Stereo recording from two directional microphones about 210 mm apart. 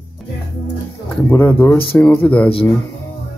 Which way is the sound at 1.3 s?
10° left (ahead or behind).